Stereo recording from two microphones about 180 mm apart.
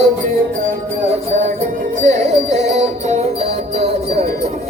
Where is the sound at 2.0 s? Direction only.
40° right (ahead or behind).